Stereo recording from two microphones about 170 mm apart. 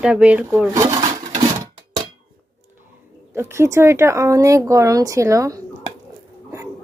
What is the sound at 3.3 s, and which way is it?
Speech, 15° right (ahead or behind).